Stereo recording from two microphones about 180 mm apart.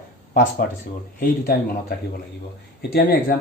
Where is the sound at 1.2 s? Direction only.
55° left (ahead or behind).